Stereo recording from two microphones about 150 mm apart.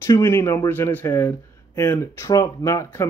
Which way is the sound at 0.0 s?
15° left (ahead or behind).